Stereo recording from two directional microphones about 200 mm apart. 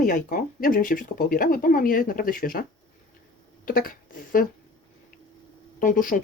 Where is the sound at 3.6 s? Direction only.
45° left (ahead or behind).